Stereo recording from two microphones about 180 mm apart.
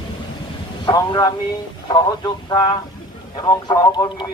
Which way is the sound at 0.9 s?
25° left (ahead or behind).